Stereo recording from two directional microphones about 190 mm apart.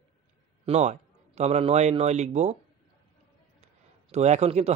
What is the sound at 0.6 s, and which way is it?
A man's voice, 35° right (ahead or behind).